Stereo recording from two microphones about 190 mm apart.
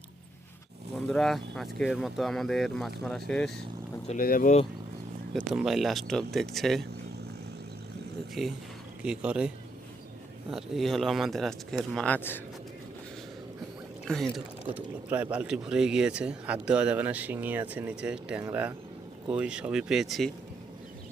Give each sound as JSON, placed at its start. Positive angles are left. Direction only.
{"t": 1.0, "sound": "speech", "side_deg": 0}
{"t": 4.2, "sound": "speech", "side_deg": 45}
{"t": 5.5, "sound": "speech", "side_deg": 0}
{"t": 8.4, "sound": "speech", "side_deg": 0}
{"t": 10.5, "sound": "speech", "side_deg": 0}
{"t": 14.1, "sound": "speech", "side_deg": 0}